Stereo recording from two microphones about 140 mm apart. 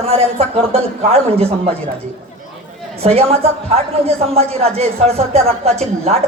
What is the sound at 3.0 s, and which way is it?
Speech, 45° right (ahead or behind).